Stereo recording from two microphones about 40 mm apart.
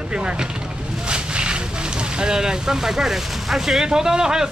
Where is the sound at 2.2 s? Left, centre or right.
Centre.